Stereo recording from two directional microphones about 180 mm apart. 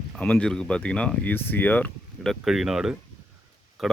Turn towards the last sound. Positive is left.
turn(degrees=0)  # may be behind; listen again after turning